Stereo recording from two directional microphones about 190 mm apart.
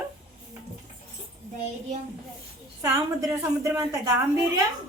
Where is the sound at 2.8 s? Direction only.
15° right (ahead or behind).